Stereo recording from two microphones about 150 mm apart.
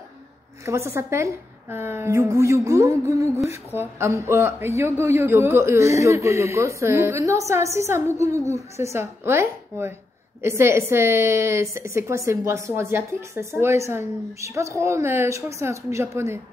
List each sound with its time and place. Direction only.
0.7 s a man's voice: 20° right (ahead or behind)